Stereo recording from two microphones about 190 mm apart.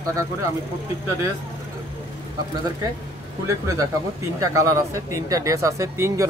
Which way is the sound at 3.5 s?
15° right (ahead or behind).